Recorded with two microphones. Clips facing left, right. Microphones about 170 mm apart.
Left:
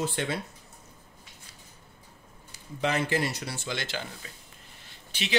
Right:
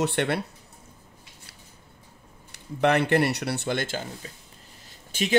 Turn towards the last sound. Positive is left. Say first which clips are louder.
# right 7 dB
turn(degrees=-45)  # may be behind; listen again after turning